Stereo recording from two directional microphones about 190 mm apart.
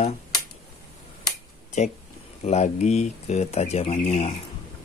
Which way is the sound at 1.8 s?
35° left (ahead or behind).